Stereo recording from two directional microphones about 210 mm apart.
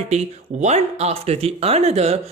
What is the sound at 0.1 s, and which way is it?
Speech, 35° right (ahead or behind).